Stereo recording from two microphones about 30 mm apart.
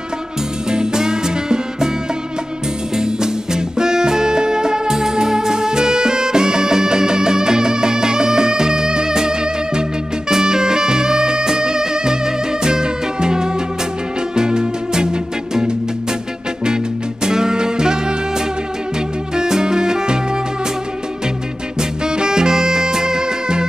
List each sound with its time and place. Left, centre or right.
0.7 s music: right
3.0 s music: right
19.3 s music: right
22.0 s music: right